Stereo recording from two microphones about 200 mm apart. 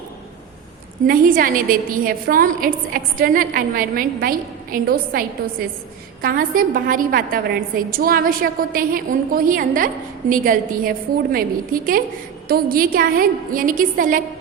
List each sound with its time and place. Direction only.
1.0 s a woman's voice: 45° right (ahead or behind)
6.2 s a woman's voice: 45° right (ahead or behind)